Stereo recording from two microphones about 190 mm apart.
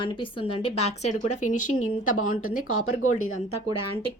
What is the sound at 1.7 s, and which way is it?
Speech, 90° left.